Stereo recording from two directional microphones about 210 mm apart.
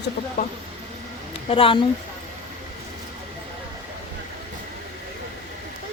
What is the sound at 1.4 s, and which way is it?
Speech, 25° left (ahead or behind).